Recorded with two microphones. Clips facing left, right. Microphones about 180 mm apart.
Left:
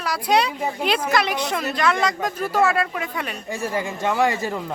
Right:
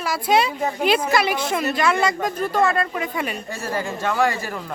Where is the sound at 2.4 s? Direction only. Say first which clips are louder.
Left 1 dB; 5° left (ahead or behind).